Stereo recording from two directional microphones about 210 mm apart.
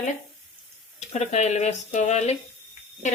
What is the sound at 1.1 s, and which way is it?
Speech, 35° left (ahead or behind).